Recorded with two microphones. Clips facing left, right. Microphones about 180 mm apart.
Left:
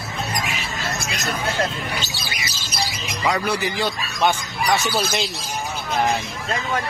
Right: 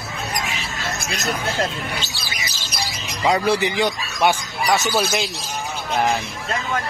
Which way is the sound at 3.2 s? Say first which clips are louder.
Right 4 dB; 30° right (ahead or behind).